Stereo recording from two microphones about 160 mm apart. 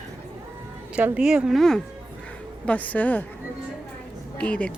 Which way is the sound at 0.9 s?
5° right (ahead or behind).